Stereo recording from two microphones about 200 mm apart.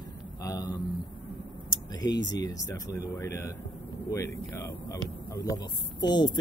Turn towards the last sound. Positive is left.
turn(degrees=20)  # may be behind; listen again after turning